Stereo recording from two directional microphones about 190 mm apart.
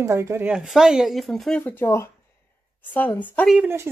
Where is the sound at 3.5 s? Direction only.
10° right (ahead or behind).